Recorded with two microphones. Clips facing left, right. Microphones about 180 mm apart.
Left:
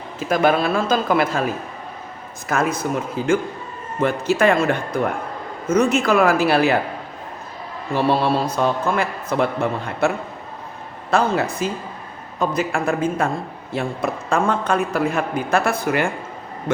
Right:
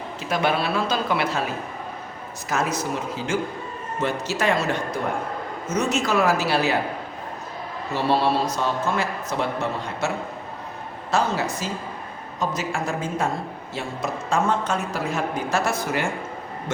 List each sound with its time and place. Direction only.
0.2 s speech: 50° left (ahead or behind)
2.5 s a woman's voice: 55° left (ahead or behind)
7.9 s a woman's voice: 55° left (ahead or behind)
11.1 s a woman's voice: 55° left (ahead or behind)